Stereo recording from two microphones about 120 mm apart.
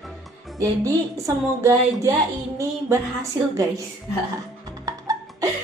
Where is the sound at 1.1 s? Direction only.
25° right (ahead or behind).